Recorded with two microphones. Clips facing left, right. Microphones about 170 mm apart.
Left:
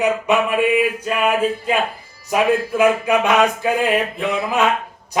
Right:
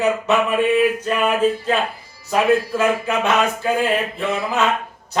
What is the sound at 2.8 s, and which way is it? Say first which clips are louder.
Mantra: left 3 dB; 15° left (ahead or behind).